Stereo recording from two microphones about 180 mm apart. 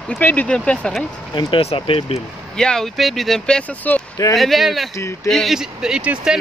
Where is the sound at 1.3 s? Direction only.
25° left (ahead or behind).